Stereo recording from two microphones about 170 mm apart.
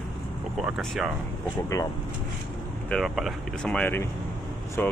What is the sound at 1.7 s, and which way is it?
Speech, 20° left (ahead or behind).